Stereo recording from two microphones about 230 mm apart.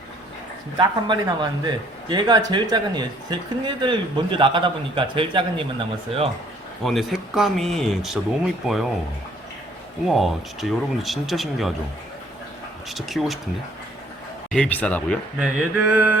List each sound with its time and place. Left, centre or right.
0.8 s a man's voice: centre
6.8 s speech: centre
10.1 s speech: centre
12.9 s speech: centre
14.5 s speech: centre
15.4 s speech: centre